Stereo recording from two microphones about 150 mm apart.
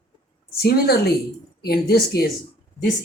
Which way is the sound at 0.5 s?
90° left.